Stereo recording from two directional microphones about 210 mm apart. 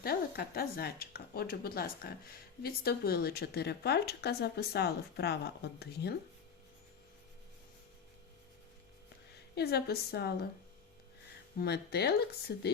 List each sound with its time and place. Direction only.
0.0 s speech: 45° left (ahead or behind)
9.6 s speech: 50° left (ahead or behind)
11.5 s speech: 50° left (ahead or behind)